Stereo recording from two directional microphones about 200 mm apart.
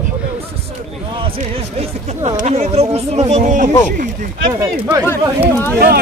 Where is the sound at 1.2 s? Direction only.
30° right (ahead or behind).